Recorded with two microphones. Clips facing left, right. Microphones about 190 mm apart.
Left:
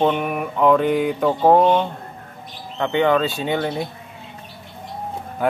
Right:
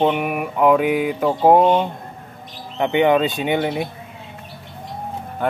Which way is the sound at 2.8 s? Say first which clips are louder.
Right 2 dB; 20° right (ahead or behind).